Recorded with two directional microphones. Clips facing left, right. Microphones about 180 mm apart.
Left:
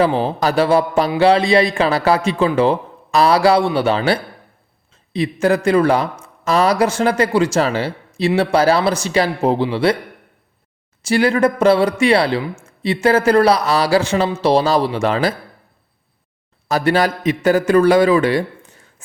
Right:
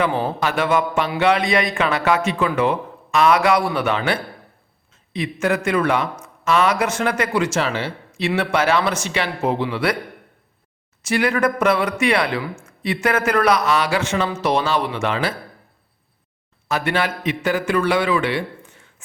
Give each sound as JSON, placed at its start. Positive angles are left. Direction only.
{"t": 0.0, "sound": "speech", "side_deg": 30}
{"t": 11.0, "sound": "speech", "side_deg": 30}
{"t": 16.6, "sound": "a man's voice", "side_deg": 35}